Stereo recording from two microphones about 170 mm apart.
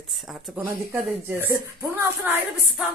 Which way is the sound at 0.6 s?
15° right (ahead or behind).